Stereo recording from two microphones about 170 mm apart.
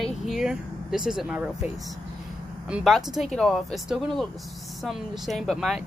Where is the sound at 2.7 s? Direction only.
Centre (ahead or behind).